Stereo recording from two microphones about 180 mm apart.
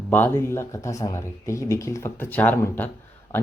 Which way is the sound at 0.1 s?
10° left (ahead or behind).